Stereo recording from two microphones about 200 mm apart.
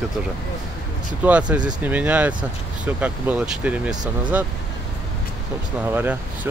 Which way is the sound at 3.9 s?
20° right (ahead or behind).